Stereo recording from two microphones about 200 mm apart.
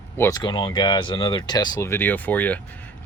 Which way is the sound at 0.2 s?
20° left (ahead or behind).